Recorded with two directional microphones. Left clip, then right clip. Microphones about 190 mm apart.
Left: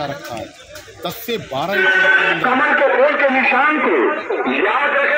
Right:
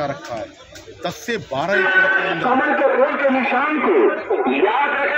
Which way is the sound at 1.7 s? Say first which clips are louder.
Left 2 dB; 25° right (ahead or behind).